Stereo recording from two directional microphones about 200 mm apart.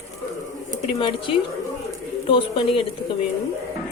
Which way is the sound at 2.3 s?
30° left (ahead or behind).